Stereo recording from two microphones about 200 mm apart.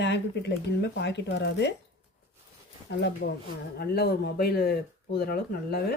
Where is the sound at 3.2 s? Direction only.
50° left (ahead or behind).